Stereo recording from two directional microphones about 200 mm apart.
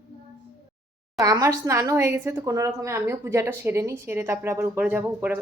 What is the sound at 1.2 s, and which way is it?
A woman's voice, 15° right (ahead or behind).